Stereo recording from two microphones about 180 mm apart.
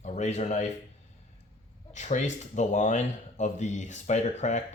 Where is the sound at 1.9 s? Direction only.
40° left (ahead or behind).